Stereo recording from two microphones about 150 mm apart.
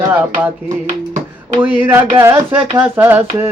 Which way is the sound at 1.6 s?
10° right (ahead or behind).